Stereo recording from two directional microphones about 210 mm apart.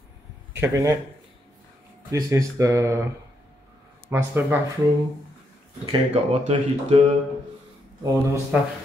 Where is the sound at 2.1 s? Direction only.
15° right (ahead or behind).